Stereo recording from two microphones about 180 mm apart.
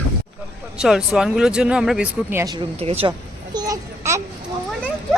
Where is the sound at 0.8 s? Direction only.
Centre (ahead or behind).